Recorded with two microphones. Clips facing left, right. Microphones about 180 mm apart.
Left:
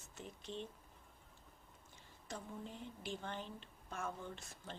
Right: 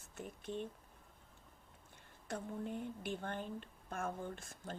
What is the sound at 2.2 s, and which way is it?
A woman's voice, 55° right (ahead or behind).